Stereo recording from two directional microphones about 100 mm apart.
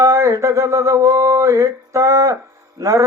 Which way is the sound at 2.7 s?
30° right (ahead or behind).